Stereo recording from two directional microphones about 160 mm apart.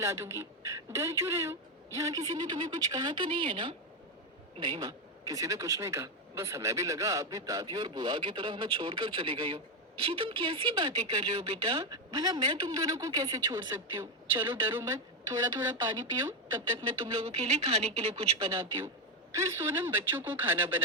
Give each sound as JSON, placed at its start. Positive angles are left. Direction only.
{"t": 0.0, "sound": "a man's voice", "side_deg": -20}
{"t": 11.9, "sound": "a man's voice", "side_deg": -20}
{"t": 19.3, "sound": "speech", "side_deg": -15}